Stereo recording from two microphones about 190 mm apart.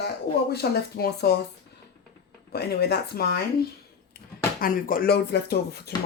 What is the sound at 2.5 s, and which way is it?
Speech, 55° left (ahead or behind).